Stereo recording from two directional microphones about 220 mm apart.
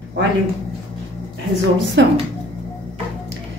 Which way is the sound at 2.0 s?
55° right (ahead or behind).